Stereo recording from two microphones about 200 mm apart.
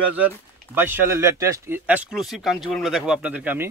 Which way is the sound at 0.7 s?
10° right (ahead or behind).